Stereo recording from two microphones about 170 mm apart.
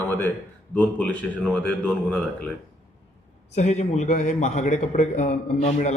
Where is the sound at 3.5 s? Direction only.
40° left (ahead or behind).